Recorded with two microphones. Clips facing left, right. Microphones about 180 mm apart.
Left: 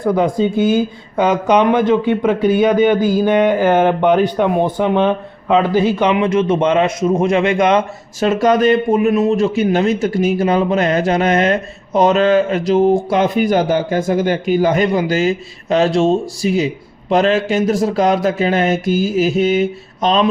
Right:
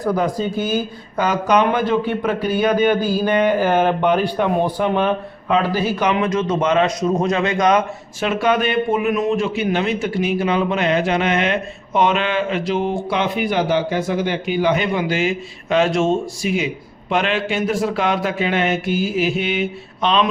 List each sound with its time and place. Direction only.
0.0 s speech: 20° left (ahead or behind)
8.3 s a man's voice: 40° left (ahead or behind)